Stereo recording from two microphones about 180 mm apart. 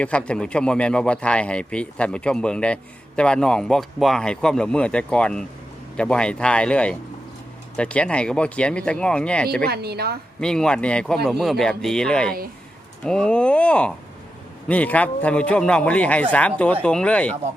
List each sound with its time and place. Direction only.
0.0 s speech: 5° left (ahead or behind)
9.6 s a woman's voice: 60° right (ahead or behind)
10.4 s a man's voice: 5° left (ahead or behind)